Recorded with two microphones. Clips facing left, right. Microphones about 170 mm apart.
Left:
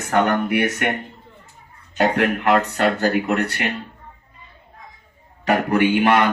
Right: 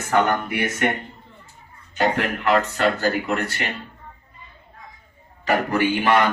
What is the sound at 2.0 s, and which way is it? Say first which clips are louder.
Speech: left 3 dB; 55° left (ahead or behind).